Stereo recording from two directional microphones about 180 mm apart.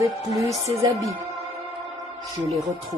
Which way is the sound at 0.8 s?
20° right (ahead or behind).